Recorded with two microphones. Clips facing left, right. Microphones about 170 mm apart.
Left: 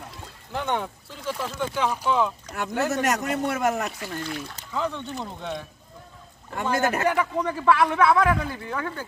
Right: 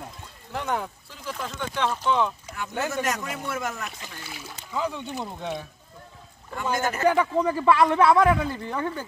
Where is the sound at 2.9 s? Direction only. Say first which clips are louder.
Left 4 dB; 70° left (ahead or behind).